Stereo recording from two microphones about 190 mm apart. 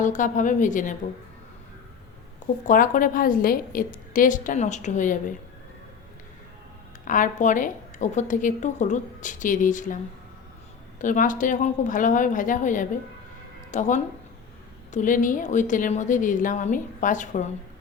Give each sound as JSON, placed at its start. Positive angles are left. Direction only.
{"t": 0.0, "sound": "a woman's voice", "side_deg": 40}
{"t": 2.6, "sound": "a woman's voice", "side_deg": 45}
{"t": 7.0, "sound": "a woman's voice", "side_deg": 45}
{"t": 11.0, "sound": "a woman's voice", "side_deg": 45}